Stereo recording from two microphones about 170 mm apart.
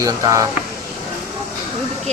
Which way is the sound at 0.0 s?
20° right (ahead or behind).